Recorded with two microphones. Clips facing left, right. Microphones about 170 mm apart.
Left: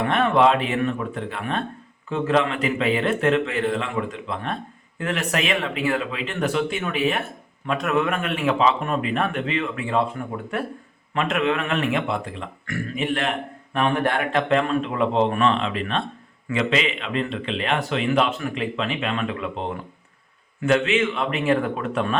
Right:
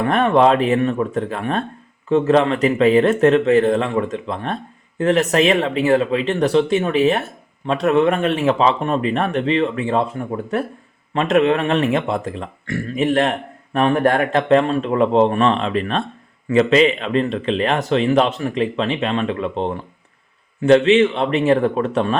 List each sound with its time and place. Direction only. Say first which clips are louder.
0.0 s speech: right 4 dB; 45° right (ahead or behind)
11.1 s speech: right 7 dB; 35° right (ahead or behind)